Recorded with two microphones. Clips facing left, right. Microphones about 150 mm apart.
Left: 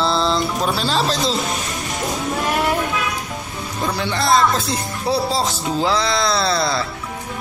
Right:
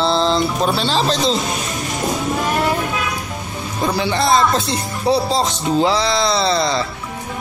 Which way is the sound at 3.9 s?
Centre (ahead or behind).